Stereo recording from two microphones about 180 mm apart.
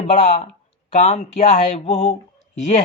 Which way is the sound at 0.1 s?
40° left (ahead or behind).